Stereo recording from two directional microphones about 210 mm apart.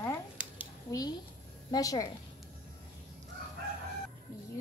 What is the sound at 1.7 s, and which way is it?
Speech, 15° left (ahead or behind).